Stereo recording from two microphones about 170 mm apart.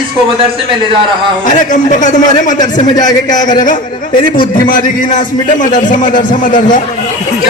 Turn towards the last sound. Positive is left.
turn(degrees=50)  # may be behind; listen again after turning